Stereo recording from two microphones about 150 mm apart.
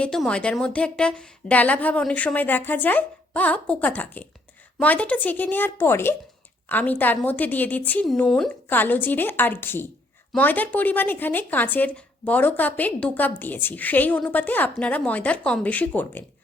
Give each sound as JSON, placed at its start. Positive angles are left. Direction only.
{"t": 0.0, "sound": "a woman's voice", "side_deg": 5}